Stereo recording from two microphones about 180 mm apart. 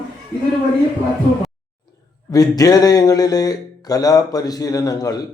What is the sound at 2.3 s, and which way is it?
Speech, 20° left (ahead or behind).